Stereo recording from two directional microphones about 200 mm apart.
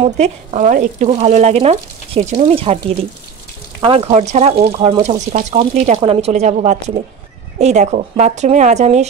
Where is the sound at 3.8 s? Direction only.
30° right (ahead or behind).